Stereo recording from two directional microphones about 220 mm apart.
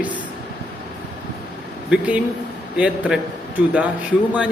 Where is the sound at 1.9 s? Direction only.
5° right (ahead or behind).